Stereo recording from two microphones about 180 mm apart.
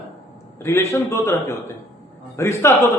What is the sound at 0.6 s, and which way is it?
A man's voice, 15° left (ahead or behind).